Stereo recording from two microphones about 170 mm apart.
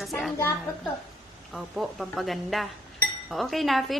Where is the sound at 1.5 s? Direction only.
Centre (ahead or behind).